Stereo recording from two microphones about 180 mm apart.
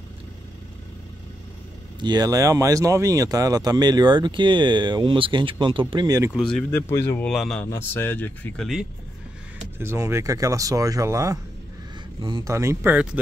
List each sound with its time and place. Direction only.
2.0 s speech: 25° right (ahead or behind)
6.3 s speech: 5° left (ahead or behind)
9.8 s speech: 15° right (ahead or behind)